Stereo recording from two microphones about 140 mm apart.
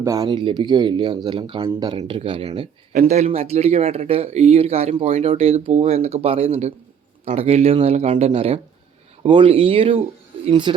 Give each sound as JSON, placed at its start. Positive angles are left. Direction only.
{"t": 0.0, "sound": "speech", "side_deg": -25}
{"t": 0.3, "sound": "speech", "side_deg": -35}
{"t": 3.1, "sound": "speech", "side_deg": -55}